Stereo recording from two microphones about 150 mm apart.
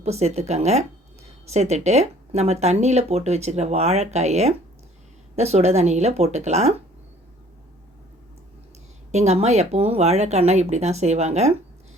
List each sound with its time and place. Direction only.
0.0 s speech: 45° right (ahead or behind)
9.1 s speech: 45° right (ahead or behind)